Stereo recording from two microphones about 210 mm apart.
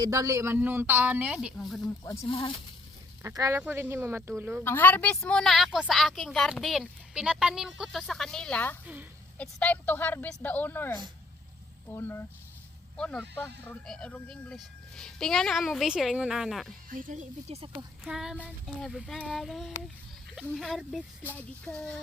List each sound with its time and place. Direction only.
0.0 s speech: 15° right (ahead or behind); by 1.8 s centre (ahead or behind)
2.0 s speech: 25° left (ahead or behind)
3.2 s speech: 15° right (ahead or behind)
4.6 s a woman's voice: 10° left (ahead or behind)
16.9 s speech: 40° right (ahead or behind)
18.0 s a woman's voice: centre (ahead or behind)